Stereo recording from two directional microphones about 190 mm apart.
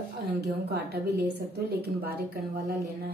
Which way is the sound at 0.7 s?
55° right (ahead or behind).